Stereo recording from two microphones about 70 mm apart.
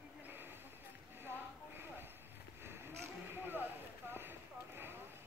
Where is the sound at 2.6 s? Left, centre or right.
Right.